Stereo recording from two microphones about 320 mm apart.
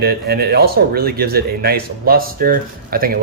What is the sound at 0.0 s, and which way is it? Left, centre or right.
Speech, right.